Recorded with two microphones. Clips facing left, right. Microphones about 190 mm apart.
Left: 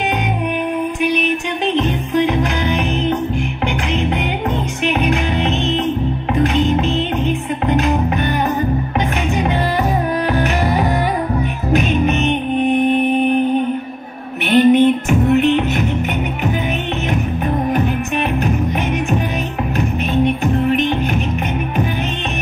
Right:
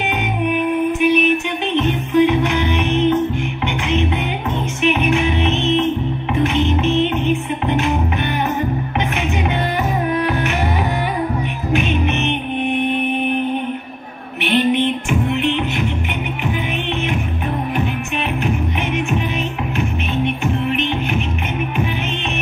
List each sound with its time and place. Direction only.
1.0 s music: 35° left (ahead or behind)
4.8 s music: 35° left (ahead or behind)
10.3 s music: 35° left (ahead or behind)
14.5 s music: 45° left (ahead or behind)
20.5 s music: 35° left (ahead or behind)